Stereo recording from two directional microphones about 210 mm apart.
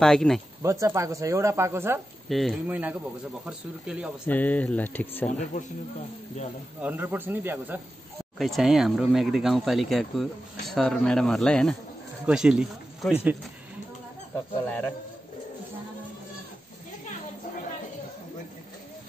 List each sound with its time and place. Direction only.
0.0 s speech: centre (ahead or behind)
0.6 s speech: 15° right (ahead or behind)
2.2 s speech: centre (ahead or behind)
4.3 s speech: 5° left (ahead or behind)
5.5 s speech: 35° left (ahead or behind)
6.8 s speech: 10° right (ahead or behind)
14.7 s speech: 5° left (ahead or behind)